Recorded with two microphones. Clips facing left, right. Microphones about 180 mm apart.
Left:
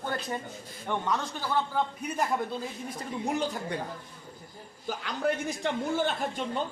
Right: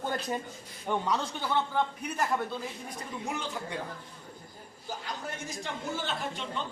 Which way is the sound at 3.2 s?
35° left (ahead or behind).